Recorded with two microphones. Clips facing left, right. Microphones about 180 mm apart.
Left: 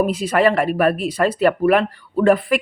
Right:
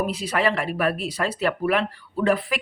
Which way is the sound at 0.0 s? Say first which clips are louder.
Left 7 dB; 50° left (ahead or behind).